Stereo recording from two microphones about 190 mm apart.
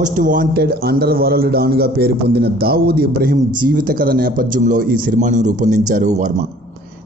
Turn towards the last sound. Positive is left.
turn(degrees=-40)  # may be behind; listen again after turning